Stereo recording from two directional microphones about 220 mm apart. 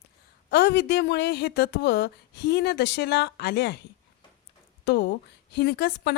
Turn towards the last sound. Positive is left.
turn(degrees=50)  # may be behind; listen again after turning